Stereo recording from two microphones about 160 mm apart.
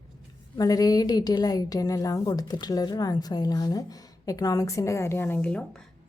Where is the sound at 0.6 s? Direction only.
25° left (ahead or behind).